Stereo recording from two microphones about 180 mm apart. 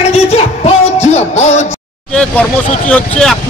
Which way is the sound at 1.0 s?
40° left (ahead or behind).